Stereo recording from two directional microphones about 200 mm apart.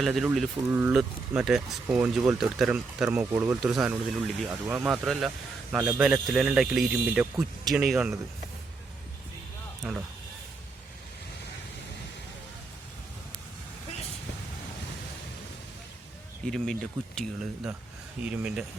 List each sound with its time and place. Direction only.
0.0 s speech: centre (ahead or behind)
9.8 s speech: 5° right (ahead or behind)
16.4 s speech: 5° left (ahead or behind)